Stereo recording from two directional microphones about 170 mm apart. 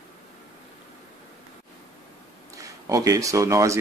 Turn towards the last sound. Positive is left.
turn(degrees=-20)  # may be behind; listen again after turning